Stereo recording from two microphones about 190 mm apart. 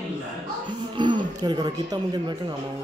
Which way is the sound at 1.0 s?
25° right (ahead or behind).